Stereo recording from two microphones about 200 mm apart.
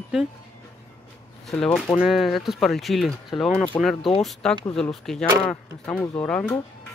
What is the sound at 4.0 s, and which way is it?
Speech, 25° left (ahead or behind).